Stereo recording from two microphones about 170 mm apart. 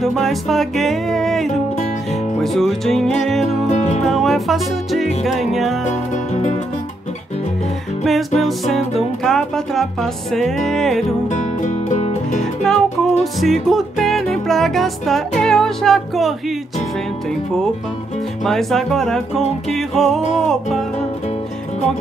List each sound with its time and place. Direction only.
0.0 s music: centre (ahead or behind)
3.6 s music: 40° left (ahead or behind)
4.0 s music: centre (ahead or behind)
8.0 s music: centre (ahead or behind)
11.2 s music: 45° left (ahead or behind)
12.6 s music: centre (ahead or behind)
18.4 s music: centre (ahead or behind)